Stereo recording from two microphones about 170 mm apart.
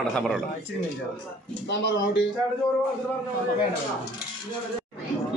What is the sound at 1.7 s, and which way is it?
Speech, 90° left.